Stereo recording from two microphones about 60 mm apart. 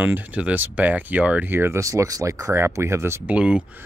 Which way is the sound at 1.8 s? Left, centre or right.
Right.